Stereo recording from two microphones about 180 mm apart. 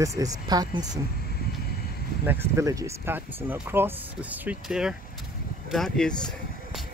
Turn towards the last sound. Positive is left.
turn(degrees=5)  # may be behind; listen again after turning